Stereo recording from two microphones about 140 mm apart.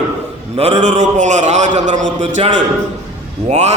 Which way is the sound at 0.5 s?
50° right (ahead or behind).